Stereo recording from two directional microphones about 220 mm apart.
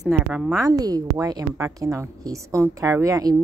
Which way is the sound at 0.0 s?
Centre (ahead or behind).